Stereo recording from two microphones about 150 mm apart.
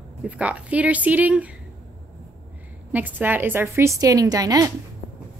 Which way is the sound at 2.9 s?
10° right (ahead or behind).